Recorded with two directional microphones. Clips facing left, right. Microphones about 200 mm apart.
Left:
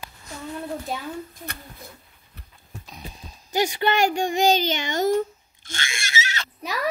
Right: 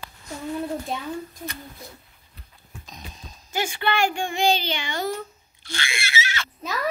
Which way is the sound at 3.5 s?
40° left (ahead or behind).